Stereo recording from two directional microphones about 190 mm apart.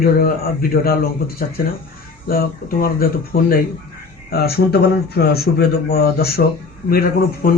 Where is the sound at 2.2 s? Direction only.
50° left (ahead or behind).